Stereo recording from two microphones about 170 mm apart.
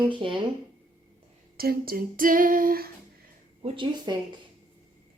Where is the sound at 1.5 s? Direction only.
60° right (ahead or behind).